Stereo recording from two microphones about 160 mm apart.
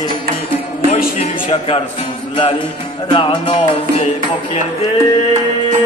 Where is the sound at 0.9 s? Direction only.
40° left (ahead or behind).